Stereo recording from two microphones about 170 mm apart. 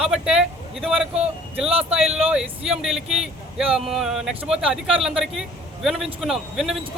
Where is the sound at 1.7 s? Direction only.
35° right (ahead or behind).